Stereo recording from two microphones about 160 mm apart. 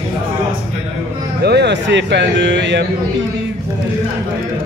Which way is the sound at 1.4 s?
90° right.